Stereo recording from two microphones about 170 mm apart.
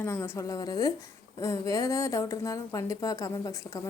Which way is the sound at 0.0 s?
15° left (ahead or behind).